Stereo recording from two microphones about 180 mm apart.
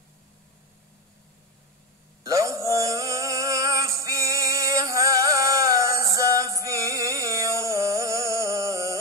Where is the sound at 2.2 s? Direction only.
15° right (ahead or behind).